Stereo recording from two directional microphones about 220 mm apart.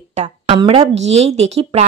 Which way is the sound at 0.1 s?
30° right (ahead or behind).